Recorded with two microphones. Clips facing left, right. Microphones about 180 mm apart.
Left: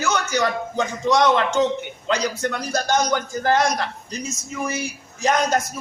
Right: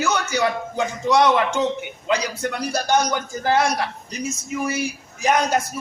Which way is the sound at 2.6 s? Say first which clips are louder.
Right 2 dB; 15° right (ahead or behind).